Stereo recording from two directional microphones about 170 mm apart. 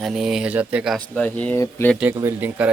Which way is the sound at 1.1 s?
10° left (ahead or behind).